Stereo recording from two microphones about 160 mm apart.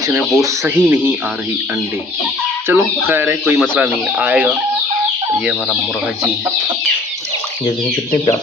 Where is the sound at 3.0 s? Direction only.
15° right (ahead or behind).